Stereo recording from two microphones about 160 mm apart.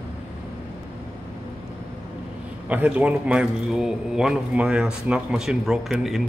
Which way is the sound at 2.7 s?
10° right (ahead or behind).